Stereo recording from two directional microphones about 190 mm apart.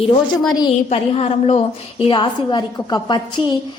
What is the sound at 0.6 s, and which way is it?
A woman's voice, 30° left (ahead or behind).